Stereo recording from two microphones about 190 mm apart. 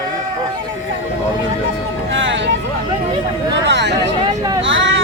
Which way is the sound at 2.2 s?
80° right.